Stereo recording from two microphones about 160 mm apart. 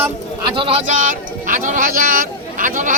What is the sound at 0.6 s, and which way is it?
Speech, 35° right (ahead or behind).